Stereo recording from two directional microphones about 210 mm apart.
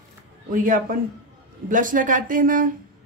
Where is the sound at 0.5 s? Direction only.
40° right (ahead or behind).